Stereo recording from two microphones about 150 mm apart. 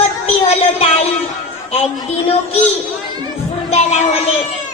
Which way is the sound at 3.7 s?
45° left (ahead or behind).